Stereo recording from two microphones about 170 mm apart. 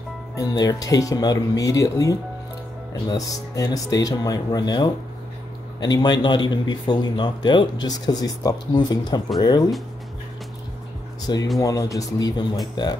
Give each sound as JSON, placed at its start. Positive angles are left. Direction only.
{"t": 0.4, "sound": "speech", "side_deg": 25}
{"t": 11.3, "sound": "speech", "side_deg": 25}